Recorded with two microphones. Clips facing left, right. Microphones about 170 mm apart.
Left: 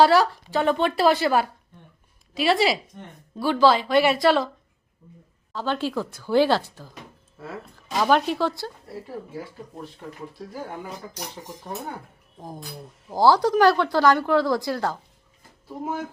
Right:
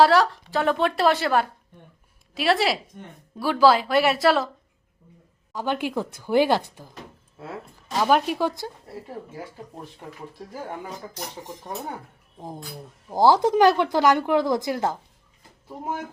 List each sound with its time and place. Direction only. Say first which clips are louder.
0.0 s speech: even; centre (ahead or behind)
5.5 s speech: even; 15° right (ahead or behind)
8.0 s speech: even; 10° right (ahead or behind)
13.1 s speech: even; 20° right (ahead or behind)